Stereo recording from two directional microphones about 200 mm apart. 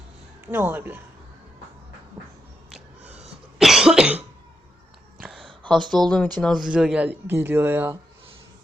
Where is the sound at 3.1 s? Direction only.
30° right (ahead or behind).